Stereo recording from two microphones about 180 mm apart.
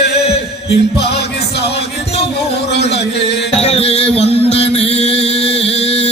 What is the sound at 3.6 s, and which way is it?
Music, 35° left (ahead or behind).